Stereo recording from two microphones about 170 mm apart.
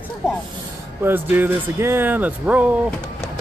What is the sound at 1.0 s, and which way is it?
Speech, 10° right (ahead or behind).